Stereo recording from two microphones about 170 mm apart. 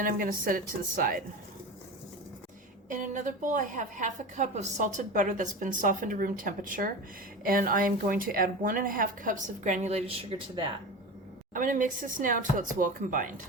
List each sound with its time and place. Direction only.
0.0 s a woman's voice: 55° right (ahead or behind)
2.9 s a woman's voice: 50° right (ahead or behind); by 10.7 s 30° right (ahead or behind)
11.5 s a woman's voice: 50° right (ahead or behind)